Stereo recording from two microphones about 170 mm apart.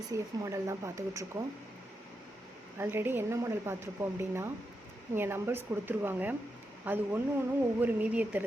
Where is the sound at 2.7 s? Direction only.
15° right (ahead or behind).